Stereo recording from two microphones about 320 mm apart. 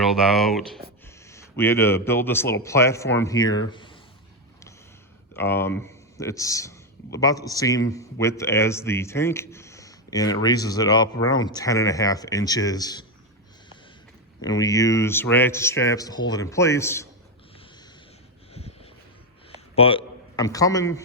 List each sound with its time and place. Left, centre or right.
0.0 s speech: centre
3.7 s a sound: centre
5.4 s a man's voice: centre
14.4 s speech: centre
18.5 s vehicle: centre
19.7 s a man's voice: centre